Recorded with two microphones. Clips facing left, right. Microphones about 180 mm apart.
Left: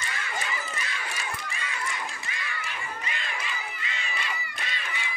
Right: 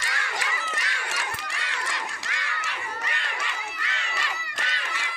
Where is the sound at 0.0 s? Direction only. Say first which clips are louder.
Right 1 dB; 85° right.